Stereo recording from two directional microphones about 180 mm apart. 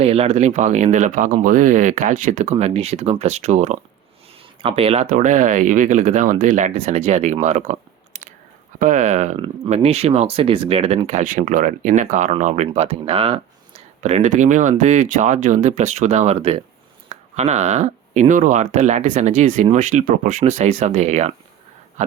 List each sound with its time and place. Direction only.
0.0 s speech: 35° right (ahead or behind)